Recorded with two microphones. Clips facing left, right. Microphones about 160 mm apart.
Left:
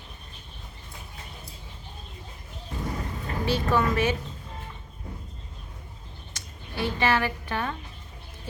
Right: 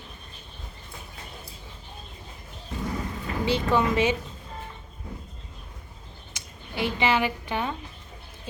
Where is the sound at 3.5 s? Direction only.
15° right (ahead or behind).